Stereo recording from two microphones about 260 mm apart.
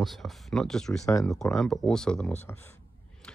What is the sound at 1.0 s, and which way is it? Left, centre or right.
Speech, centre.